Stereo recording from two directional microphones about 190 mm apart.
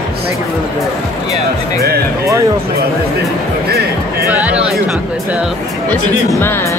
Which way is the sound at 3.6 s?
55° right (ahead or behind).